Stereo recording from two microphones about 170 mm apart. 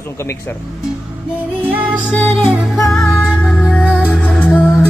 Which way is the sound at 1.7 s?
10° right (ahead or behind).